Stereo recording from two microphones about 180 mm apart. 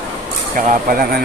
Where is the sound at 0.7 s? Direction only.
55° right (ahead or behind).